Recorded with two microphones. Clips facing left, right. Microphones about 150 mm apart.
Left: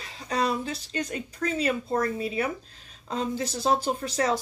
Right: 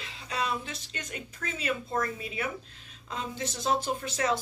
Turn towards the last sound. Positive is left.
turn(degrees=35)  # may be behind; listen again after turning